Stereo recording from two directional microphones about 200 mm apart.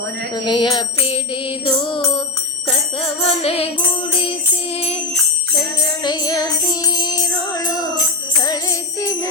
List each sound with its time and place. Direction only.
0.3 s music: 20° left (ahead or behind)
6.0 s music: 20° left (ahead or behind)